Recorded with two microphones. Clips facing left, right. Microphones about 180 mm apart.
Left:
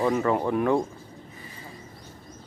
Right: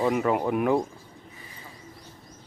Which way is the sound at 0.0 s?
10° right (ahead or behind).